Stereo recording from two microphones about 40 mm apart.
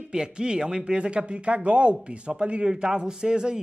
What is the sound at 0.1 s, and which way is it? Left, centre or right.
A man's voice, right.